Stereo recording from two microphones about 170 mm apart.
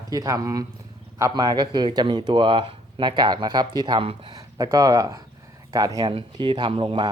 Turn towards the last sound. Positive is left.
turn(degrees=-30)  # may be behind; listen again after turning